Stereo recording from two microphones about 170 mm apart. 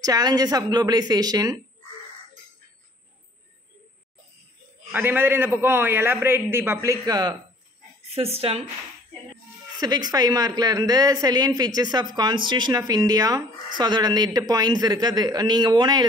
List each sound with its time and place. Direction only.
0.0 s speech: 20° right (ahead or behind)
4.9 s a man's voice: 10° right (ahead or behind)
8.1 s speech: 35° right (ahead or behind)
9.8 s speech: 25° right (ahead or behind)